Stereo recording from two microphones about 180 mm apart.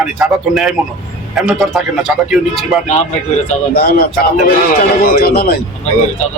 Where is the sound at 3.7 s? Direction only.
60° left (ahead or behind).